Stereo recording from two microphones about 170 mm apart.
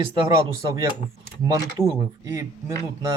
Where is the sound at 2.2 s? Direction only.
20° right (ahead or behind).